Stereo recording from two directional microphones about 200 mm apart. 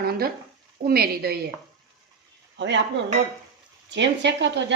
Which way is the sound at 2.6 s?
65° right (ahead or behind).